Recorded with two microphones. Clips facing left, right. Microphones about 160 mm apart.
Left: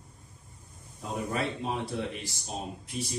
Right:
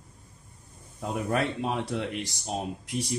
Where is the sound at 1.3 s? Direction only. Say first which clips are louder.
Right 5 dB; 70° right (ahead or behind).